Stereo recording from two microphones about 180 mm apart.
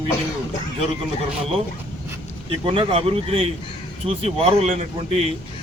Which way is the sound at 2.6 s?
30° right (ahead or behind).